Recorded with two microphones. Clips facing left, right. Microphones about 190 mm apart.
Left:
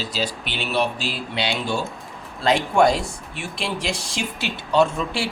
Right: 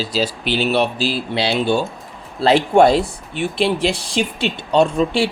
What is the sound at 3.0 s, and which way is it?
Speech, centre (ahead or behind).